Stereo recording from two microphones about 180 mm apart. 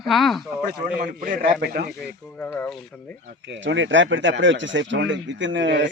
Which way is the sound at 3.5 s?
90° right.